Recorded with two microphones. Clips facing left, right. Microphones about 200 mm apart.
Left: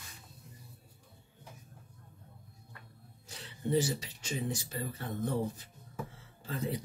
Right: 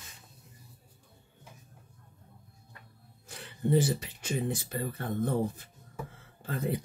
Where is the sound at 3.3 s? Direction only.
55° right (ahead or behind).